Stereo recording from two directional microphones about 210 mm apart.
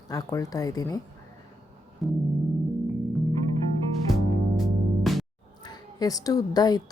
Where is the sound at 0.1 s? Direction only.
15° left (ahead or behind).